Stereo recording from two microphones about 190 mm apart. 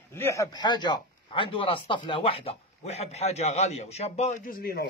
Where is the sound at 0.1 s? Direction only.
15° left (ahead or behind).